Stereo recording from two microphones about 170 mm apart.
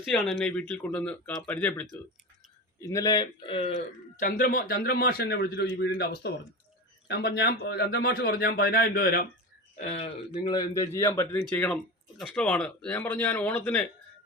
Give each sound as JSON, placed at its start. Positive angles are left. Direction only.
{"t": 0.0, "sound": "speech", "side_deg": 0}
{"t": 2.8, "sound": "speech", "side_deg": 20}
{"t": 4.2, "sound": "a man's voice", "side_deg": 50}
{"t": 9.7, "sound": "speech", "side_deg": 40}
{"t": 10.5, "sound": "speech", "side_deg": 20}